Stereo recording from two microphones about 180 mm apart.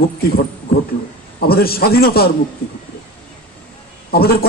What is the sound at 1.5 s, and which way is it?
Speech, 55° left (ahead or behind).